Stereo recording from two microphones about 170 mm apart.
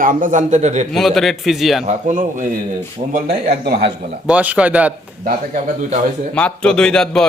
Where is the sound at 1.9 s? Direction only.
45° right (ahead or behind); by 3.9 s 65° right (ahead or behind).